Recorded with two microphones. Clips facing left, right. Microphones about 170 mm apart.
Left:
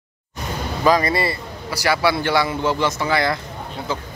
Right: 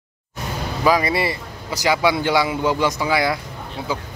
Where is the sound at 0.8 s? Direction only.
10° right (ahead or behind).